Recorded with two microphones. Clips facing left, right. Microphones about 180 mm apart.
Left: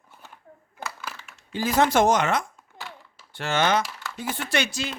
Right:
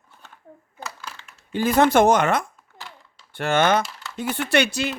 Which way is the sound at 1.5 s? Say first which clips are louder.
Right 4 dB; 55° right (ahead or behind).